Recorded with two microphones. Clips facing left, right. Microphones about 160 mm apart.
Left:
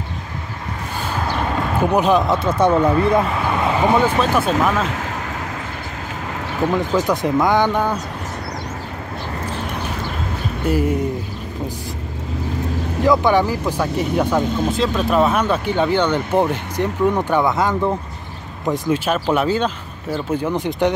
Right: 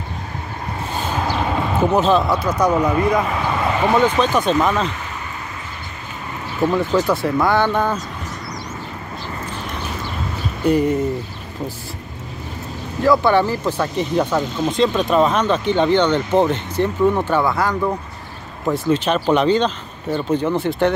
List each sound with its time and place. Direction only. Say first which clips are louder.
1.5 s a sound: even; 5° right (ahead or behind)
1.9 s speech: even; 15° left (ahead or behind)
2.4 s speech: left 2 dB; 25° left (ahead or behind)
3.2 s a sound: left 1 dB; 5° left (ahead or behind)
3.8 s speech: right 1 dB; 10° left (ahead or behind)
7.1 s speech: left 1 dB; 15° left (ahead or behind)
10.6 s speech: right 3 dB; 5° left (ahead or behind)
13.0 s speech: right 1 dB; 15° left (ahead or behind)
18.7 s speech: right 1 dB; 10° left (ahead or behind)